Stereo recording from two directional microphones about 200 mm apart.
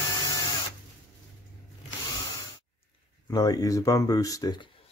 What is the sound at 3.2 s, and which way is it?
Speech, 20° left (ahead or behind).